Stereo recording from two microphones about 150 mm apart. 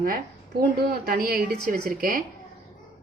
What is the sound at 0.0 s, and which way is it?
Speech, 80° right.